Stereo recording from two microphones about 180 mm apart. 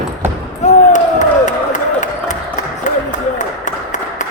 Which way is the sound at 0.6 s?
40° left (ahead or behind).